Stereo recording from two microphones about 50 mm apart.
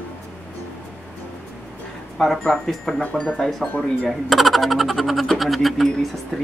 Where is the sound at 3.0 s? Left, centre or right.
Left.